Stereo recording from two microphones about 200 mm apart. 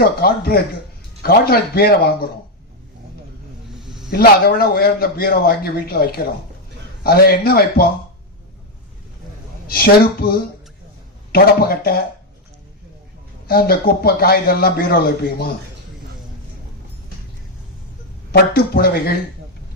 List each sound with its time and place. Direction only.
0.0 s a man's voice: 50° left (ahead or behind)
3.8 s a sound: centre (ahead or behind)
4.1 s a man's voice: 50° left (ahead or behind)
9.6 s a man's voice: 50° left (ahead or behind)
13.5 s a man's voice: 50° left (ahead or behind)
18.3 s a man's voice: 50° left (ahead or behind)